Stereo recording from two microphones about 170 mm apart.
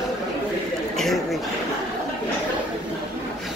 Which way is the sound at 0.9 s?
Centre (ahead or behind).